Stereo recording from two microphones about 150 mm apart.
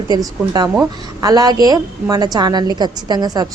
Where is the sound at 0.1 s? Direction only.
25° right (ahead or behind).